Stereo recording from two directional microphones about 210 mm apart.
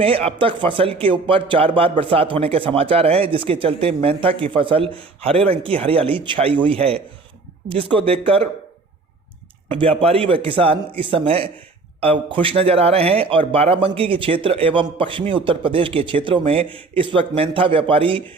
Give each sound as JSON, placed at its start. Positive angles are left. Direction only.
{"t": 0.0, "sound": "a man's voice", "side_deg": -25}
{"t": 9.6, "sound": "a man's voice", "side_deg": -25}